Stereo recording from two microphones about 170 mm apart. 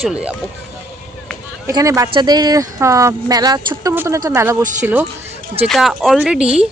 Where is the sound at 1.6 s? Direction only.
20° right (ahead or behind).